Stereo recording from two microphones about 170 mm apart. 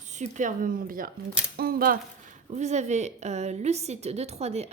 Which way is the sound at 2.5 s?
45° right (ahead or behind).